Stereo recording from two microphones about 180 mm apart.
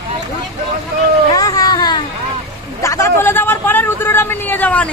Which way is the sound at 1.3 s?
20° left (ahead or behind).